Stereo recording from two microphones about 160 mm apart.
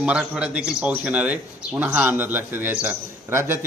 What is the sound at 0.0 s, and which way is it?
A man's voice, 5° right (ahead or behind).